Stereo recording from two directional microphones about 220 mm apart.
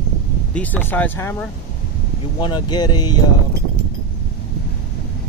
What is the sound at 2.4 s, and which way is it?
Speech, 20° left (ahead or behind).